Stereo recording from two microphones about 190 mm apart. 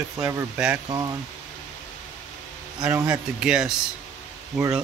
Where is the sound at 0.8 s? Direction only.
15° right (ahead or behind).